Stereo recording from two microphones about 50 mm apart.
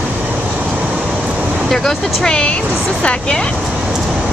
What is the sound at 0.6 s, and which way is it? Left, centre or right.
Vehicle, right.